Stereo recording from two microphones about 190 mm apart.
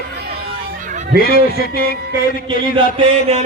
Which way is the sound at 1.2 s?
50° left (ahead or behind).